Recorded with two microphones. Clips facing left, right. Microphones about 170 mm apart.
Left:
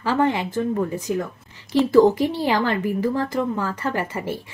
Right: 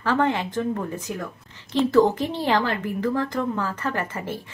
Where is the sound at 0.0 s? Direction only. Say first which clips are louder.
Left 2 dB; 10° left (ahead or behind).